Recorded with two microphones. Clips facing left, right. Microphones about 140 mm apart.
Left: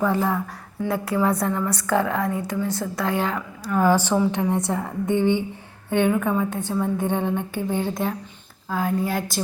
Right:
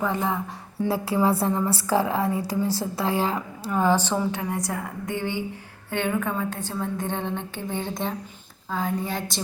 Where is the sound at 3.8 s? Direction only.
10° left (ahead or behind).